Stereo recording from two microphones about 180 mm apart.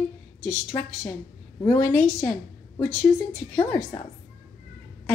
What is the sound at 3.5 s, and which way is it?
Speech, 15° left (ahead or behind).